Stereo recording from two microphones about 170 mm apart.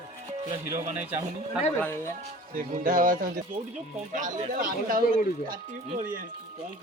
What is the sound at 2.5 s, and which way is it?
Speech, 55° right (ahead or behind).